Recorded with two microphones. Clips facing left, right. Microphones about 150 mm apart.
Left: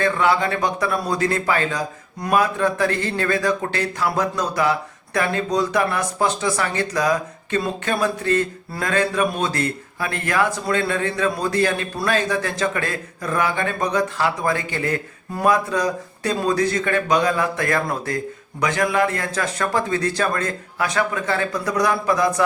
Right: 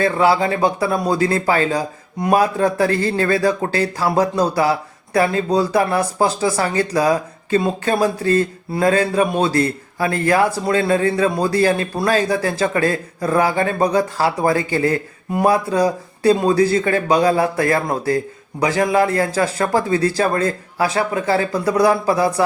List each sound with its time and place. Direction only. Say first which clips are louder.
0.0 s speech: right 3 dB; 30° right (ahead or behind)